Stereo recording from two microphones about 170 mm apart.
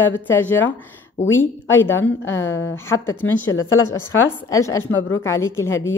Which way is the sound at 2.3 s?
90° left.